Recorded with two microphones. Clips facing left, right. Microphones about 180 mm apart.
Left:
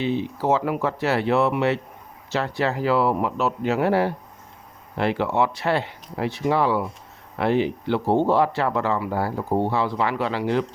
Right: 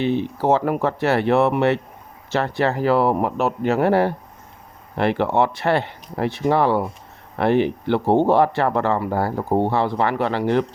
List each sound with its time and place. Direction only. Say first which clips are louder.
0.0 s speech: right 3 dB; 60° right (ahead or behind)